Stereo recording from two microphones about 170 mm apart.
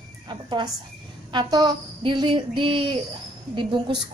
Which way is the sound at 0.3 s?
25° right (ahead or behind).